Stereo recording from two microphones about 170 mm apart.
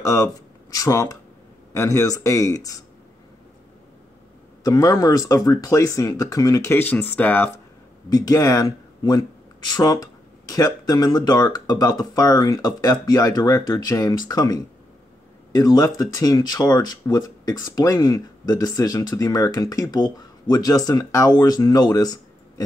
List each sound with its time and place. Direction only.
0.0 s speech: 20° left (ahead or behind)
4.6 s speech: 20° left (ahead or behind)
8.1 s speech: 20° left (ahead or behind)